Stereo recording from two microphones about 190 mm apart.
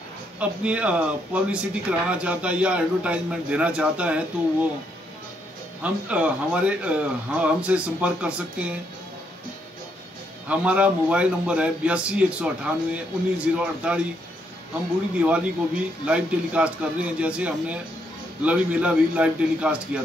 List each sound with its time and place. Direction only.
0.4 s speech: 5° right (ahead or behind)
5.8 s speech: 5° right (ahead or behind)
10.5 s speech: 5° right (ahead or behind)
15.1 s speech: 5° right (ahead or behind)